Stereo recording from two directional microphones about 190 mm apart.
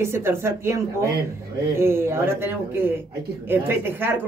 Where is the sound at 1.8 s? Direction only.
15° right (ahead or behind).